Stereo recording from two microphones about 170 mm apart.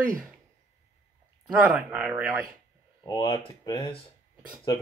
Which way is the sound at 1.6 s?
5° right (ahead or behind).